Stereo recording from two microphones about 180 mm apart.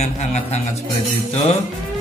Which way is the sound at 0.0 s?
40° left (ahead or behind).